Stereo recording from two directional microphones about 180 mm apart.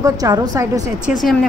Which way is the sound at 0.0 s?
20° right (ahead or behind).